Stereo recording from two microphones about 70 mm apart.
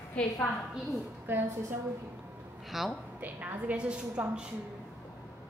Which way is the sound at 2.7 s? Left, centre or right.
Centre.